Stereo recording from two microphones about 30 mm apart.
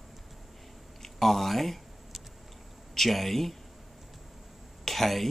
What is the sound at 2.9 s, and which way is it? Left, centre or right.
Speech, centre.